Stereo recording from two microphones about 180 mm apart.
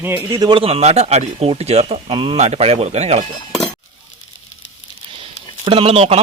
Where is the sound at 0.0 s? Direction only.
15° right (ahead or behind); by 3.2 s 35° right (ahead or behind).